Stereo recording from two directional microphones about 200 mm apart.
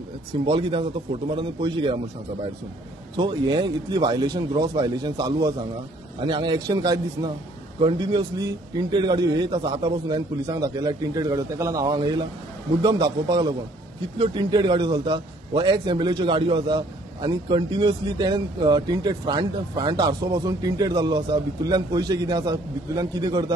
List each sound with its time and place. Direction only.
0.5 s a man's voice: 25° right (ahead or behind)
3.2 s a man's voice: 25° right (ahead or behind)